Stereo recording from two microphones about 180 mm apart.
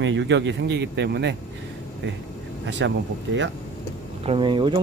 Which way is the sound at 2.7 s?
85° right.